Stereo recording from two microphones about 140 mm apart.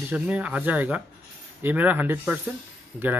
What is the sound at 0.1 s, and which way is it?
Speech, 10° right (ahead or behind).